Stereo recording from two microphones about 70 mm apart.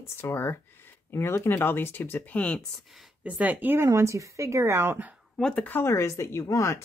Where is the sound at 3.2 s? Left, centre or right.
Right.